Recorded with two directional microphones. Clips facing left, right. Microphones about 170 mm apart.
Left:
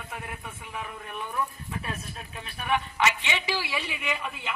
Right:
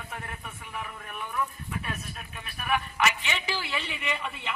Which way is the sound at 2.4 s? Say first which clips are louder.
Left 1 dB; 25° left (ahead or behind).